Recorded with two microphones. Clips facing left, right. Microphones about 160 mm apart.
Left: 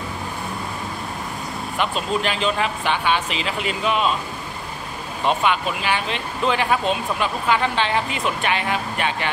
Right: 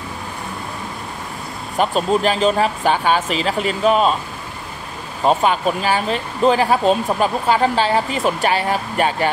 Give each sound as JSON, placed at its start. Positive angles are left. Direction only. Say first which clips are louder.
{"t": 1.8, "sound": "speech", "louder": "right 7 dB", "side_deg": -40}
{"t": 5.2, "sound": "speech", "louder": "right 5 dB", "side_deg": -40}